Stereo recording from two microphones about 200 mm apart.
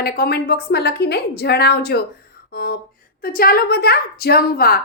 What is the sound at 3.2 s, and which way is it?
Speech, 50° left (ahead or behind).